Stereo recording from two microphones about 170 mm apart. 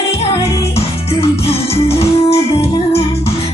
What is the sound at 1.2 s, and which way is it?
Music, 35° left (ahead or behind).